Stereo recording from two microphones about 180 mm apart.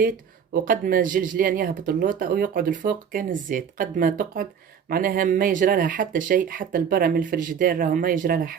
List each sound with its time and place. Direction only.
0.5 s speech: 50° right (ahead or behind)